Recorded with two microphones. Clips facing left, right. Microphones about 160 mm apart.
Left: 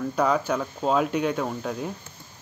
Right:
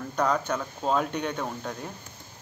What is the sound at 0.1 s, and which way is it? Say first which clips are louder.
Speech: left 2 dB; 10° left (ahead or behind).